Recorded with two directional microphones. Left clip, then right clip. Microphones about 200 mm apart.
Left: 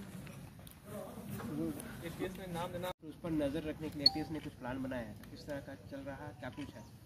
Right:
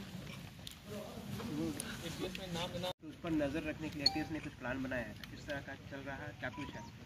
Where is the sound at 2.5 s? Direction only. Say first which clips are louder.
Right 1 dB; 15° left (ahead or behind).